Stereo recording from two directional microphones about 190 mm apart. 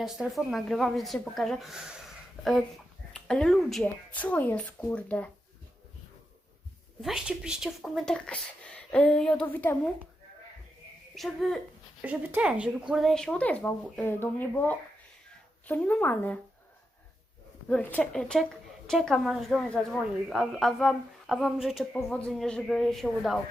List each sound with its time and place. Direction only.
0.0 s a woman's voice: centre (ahead or behind)
7.0 s a woman's voice: 5° right (ahead or behind)
11.1 s a woman's voice: centre (ahead or behind)
17.7 s a woman's voice: 10° left (ahead or behind)